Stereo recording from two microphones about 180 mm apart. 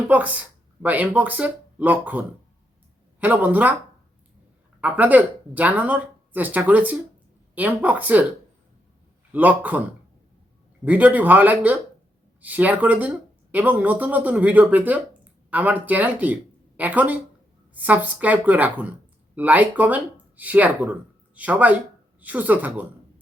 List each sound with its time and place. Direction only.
0.1 s speech: 10° right (ahead or behind)
4.8 s speech: 10° right (ahead or behind)
9.3 s speech: 10° right (ahead or behind)
10.8 s a woman's voice: 10° right (ahead or behind)